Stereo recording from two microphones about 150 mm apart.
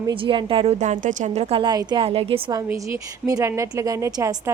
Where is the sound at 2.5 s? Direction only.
25° right (ahead or behind).